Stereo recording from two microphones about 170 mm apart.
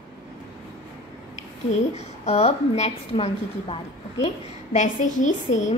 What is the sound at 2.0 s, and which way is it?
A woman's voice, 40° left (ahead or behind).